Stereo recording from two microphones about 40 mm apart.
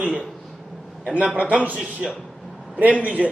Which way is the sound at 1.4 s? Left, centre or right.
Right.